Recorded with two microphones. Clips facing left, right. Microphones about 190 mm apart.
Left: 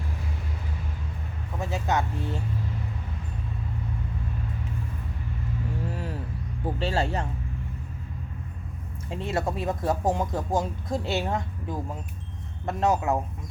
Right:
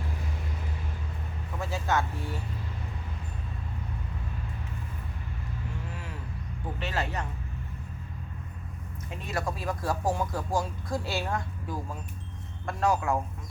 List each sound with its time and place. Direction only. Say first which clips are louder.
1.5 s speech: left 2 dB; 20° left (ahead or behind)
5.9 s vehicle: left 7 dB; 35° left (ahead or behind)
6.7 s speech: left 5 dB; 30° left (ahead or behind)
9.0 s speech: left 5 dB; 25° left (ahead or behind)